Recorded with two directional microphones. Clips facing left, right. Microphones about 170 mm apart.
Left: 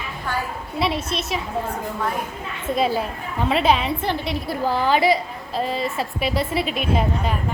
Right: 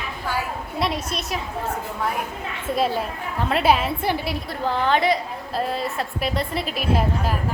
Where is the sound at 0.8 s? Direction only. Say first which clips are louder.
Left 2 dB; centre (ahead or behind).